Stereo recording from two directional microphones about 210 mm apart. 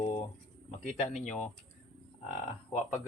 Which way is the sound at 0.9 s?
35° left (ahead or behind).